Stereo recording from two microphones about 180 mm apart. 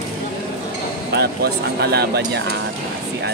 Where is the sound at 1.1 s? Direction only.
65° right (ahead or behind).